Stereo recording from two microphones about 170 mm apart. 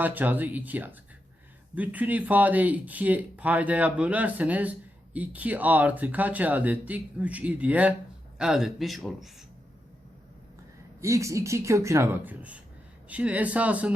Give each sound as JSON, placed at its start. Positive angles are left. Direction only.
{"t": 0.0, "sound": "speech", "side_deg": -10}
{"t": 11.0, "sound": "speech", "side_deg": -15}